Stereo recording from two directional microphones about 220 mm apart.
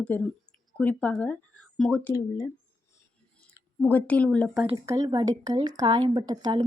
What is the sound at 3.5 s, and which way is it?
Speech, 10° left (ahead or behind).